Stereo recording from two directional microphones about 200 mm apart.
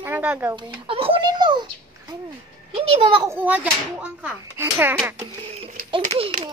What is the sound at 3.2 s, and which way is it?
A child's voice, 10° right (ahead or behind).